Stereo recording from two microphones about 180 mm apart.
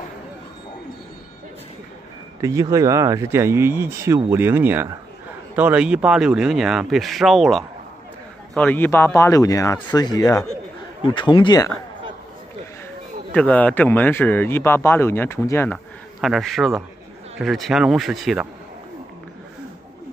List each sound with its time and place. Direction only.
2.4 s speech: 20° right (ahead or behind); by 11.7 s 20° left (ahead or behind)
13.3 s speech: 10° left (ahead or behind)
16.2 s speech: centre (ahead or behind)